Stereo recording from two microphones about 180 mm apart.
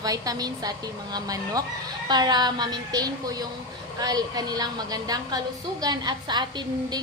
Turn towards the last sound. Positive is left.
turn(degrees=-25)  # may be behind; listen again after turning